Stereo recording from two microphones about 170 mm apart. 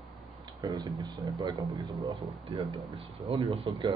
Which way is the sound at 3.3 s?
30° right (ahead or behind).